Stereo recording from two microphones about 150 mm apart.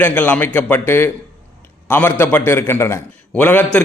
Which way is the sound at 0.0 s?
10° left (ahead or behind).